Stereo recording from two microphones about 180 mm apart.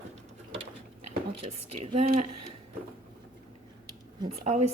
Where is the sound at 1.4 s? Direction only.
30° right (ahead or behind).